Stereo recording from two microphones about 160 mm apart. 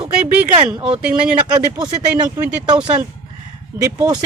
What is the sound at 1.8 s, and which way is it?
Speech, 25° right (ahead or behind).